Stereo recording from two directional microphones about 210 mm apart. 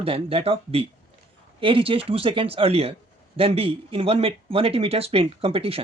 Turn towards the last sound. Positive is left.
turn(degrees=-25)  # may be behind; listen again after turning